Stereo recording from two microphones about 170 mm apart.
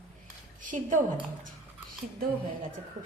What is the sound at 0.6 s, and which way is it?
Speech, 50° right (ahead or behind).